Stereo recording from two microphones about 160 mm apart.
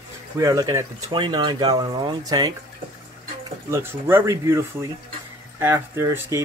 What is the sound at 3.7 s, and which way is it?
Speech, 15° right (ahead or behind).